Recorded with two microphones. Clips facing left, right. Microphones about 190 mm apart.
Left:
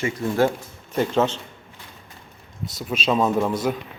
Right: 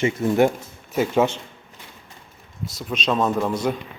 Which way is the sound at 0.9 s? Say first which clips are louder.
Right 1 dB; 10° right (ahead or behind).